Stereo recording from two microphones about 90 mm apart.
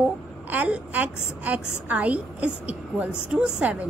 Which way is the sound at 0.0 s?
20° right (ahead or behind).